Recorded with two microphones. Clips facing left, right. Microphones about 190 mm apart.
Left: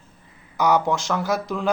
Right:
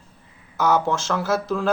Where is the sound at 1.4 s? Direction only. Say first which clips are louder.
Right 3 dB; 15° left (ahead or behind).